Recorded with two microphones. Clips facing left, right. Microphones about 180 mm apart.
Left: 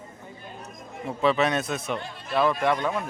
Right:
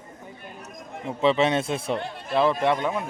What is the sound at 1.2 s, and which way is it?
A man's voice, 25° right (ahead or behind).